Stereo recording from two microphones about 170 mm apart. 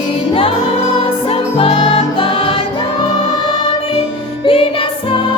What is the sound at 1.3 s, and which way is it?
Music, 35° left (ahead or behind).